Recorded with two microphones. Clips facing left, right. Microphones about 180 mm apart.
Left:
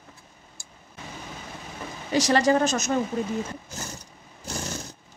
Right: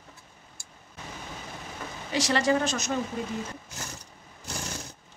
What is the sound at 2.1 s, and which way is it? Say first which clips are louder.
Speech: left 4 dB; 40° left (ahead or behind).